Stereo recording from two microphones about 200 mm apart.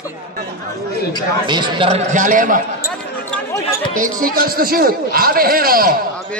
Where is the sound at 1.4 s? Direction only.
25° right (ahead or behind).